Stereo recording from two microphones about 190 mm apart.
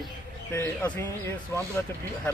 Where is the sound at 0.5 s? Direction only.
10° left (ahead or behind).